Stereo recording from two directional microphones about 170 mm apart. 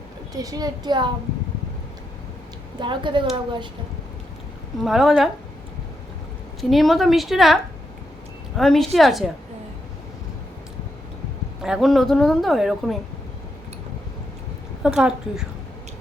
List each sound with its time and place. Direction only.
0.3 s a child's voice: 20° right (ahead or behind)
2.8 s a child's voice: 30° right (ahead or behind)
4.8 s a woman's voice: centre (ahead or behind)
6.6 s a woman's voice: centre (ahead or behind)
11.6 s a woman's voice: centre (ahead or behind)
14.8 s a woman's voice: 5° right (ahead or behind)